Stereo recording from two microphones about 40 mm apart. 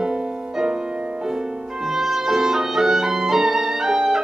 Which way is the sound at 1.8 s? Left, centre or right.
Centre.